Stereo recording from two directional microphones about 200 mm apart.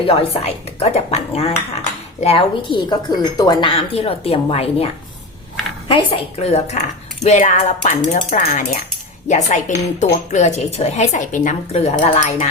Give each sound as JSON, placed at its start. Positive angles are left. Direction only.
{"t": 0.0, "sound": "speech", "side_deg": 25}
{"t": 5.9, "sound": "speech", "side_deg": 25}